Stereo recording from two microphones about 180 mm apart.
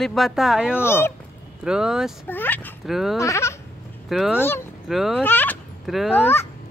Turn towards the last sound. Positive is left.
turn(degrees=0)  # may be behind; listen again after turning